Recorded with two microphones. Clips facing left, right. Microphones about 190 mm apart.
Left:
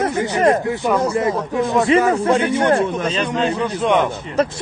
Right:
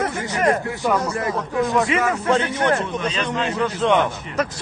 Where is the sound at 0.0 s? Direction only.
30° left (ahead or behind).